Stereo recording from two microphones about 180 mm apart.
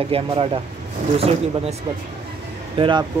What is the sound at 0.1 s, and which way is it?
Speech, 30° right (ahead or behind).